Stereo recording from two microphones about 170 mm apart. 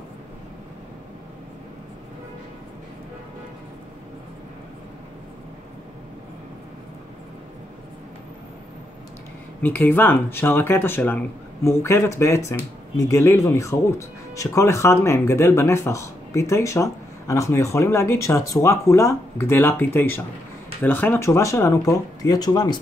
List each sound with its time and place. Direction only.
9.6 s speech: 10° left (ahead or behind)